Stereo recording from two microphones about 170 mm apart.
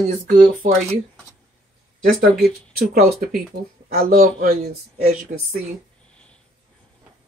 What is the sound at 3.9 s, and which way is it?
Speech, 55° right (ahead or behind).